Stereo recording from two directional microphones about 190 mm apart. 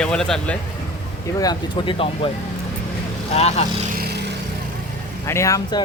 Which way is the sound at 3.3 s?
35° left (ahead or behind).